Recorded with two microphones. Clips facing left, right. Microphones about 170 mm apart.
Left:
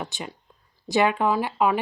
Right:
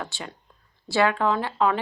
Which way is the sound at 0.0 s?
20° left (ahead or behind).